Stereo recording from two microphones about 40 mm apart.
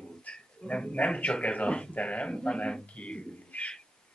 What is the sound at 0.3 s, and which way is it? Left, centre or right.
Speech, left.